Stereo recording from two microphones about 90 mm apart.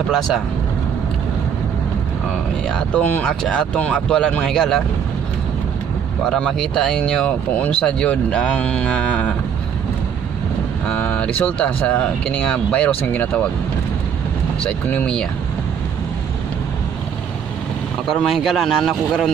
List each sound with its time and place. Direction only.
2.9 s speech: 20° left (ahead or behind)
6.2 s speech: 5° left (ahead or behind)
10.9 s speech: 15° left (ahead or behind)
14.6 s speech: 15° left (ahead or behind)
18.0 s speech: 5° left (ahead or behind)